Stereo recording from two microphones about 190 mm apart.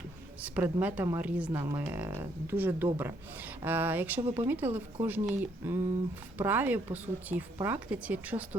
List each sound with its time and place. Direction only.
0.4 s speech: 10° right (ahead or behind)
4.2 s speech: 30° right (ahead or behind)
4.4 s speech: 10° right (ahead or behind)